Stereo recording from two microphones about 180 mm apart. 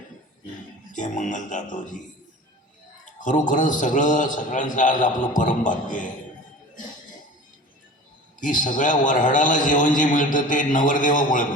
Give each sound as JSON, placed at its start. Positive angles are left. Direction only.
{"t": 0.9, "sound": "a man's voice", "side_deg": 45}
{"t": 3.2, "sound": "a man's voice", "side_deg": 45}
{"t": 8.4, "sound": "a man's voice", "side_deg": 45}